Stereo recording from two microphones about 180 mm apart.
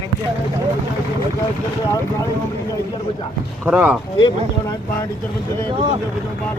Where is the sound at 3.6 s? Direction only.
5° right (ahead or behind).